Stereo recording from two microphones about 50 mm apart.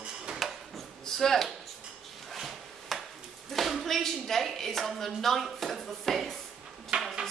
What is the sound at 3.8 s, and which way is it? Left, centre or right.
A woman's voice, centre.